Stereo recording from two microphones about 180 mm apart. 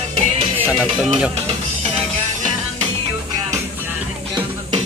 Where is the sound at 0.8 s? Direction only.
5° right (ahead or behind).